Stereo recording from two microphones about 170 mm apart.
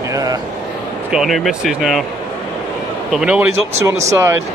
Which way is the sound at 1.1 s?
Centre (ahead or behind).